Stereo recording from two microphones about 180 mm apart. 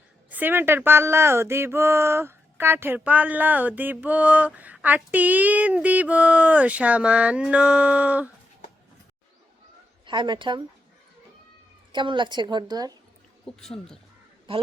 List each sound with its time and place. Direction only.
0.3 s speech: 10° right (ahead or behind)
10.1 s a woman's voice: 25° right (ahead or behind)
11.9 s a woman's voice: 25° right (ahead or behind)
13.4 s speech: 5° left (ahead or behind)